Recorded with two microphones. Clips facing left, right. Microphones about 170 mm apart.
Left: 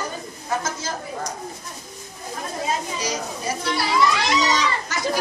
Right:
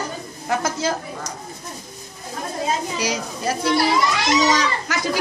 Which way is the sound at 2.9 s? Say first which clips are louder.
Right 2 dB; 70° right (ahead or behind).